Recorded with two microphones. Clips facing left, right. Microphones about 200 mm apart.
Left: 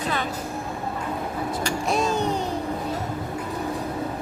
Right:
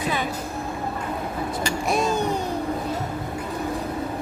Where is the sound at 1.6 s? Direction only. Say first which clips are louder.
Right 1 dB; 10° right (ahead or behind).